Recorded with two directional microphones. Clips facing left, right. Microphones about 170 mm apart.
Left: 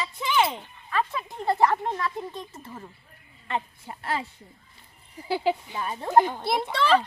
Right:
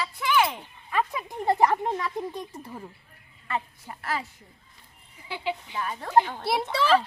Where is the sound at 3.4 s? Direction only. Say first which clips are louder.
Left 1 dB; 25° left (ahead or behind).